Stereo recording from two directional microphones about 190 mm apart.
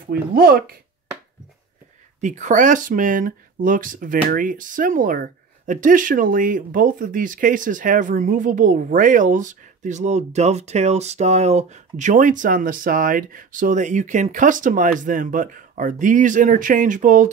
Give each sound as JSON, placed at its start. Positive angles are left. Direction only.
{"t": 0.1, "sound": "speech", "side_deg": -55}
{"t": 2.2, "sound": "speech", "side_deg": -40}